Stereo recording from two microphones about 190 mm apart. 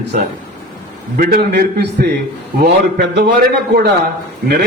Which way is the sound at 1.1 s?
50° right (ahead or behind).